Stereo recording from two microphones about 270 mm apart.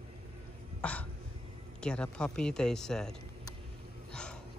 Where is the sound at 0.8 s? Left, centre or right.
Centre.